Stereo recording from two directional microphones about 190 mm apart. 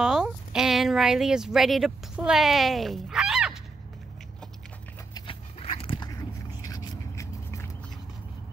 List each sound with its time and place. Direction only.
0.0 s speech: 5° right (ahead or behind)
5.1 s dog: 25° left (ahead or behind)
6.7 s a sound: 20° left (ahead or behind)